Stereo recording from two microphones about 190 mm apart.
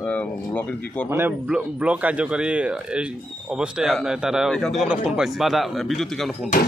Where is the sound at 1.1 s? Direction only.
10° right (ahead or behind).